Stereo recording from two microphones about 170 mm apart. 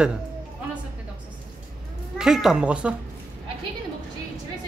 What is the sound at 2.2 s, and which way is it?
Speech, centre (ahead or behind).